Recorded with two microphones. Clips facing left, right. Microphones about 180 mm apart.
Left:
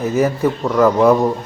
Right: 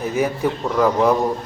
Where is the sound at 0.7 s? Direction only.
5° right (ahead or behind).